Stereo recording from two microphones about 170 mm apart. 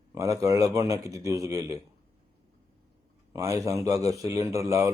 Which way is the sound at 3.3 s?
20° right (ahead or behind).